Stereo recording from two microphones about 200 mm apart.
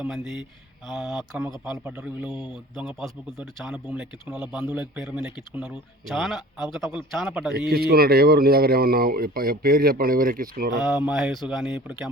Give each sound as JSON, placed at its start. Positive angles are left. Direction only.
{"t": 0.0, "sound": "a man's voice", "side_deg": 0}
{"t": 7.7, "sound": "speech", "side_deg": -50}
{"t": 10.8, "sound": "a man's voice", "side_deg": -5}